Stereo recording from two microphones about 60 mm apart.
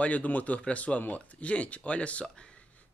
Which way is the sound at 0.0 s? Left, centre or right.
Left.